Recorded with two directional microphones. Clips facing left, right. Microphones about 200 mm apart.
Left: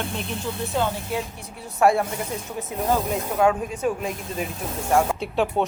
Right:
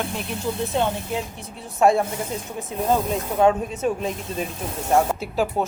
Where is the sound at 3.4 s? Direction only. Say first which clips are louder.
Right 2 dB; 25° right (ahead or behind).